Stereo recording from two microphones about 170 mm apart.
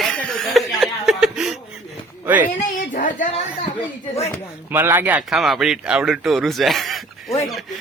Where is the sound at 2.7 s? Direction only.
55° left (ahead or behind).